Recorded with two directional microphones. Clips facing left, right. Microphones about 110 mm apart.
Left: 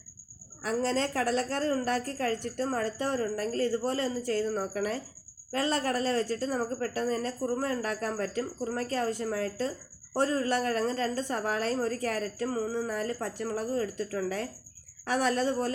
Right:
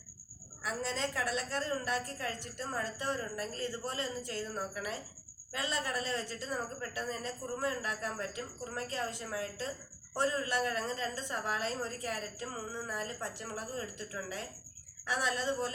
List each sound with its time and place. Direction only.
0.6 s a woman's voice: 50° left (ahead or behind)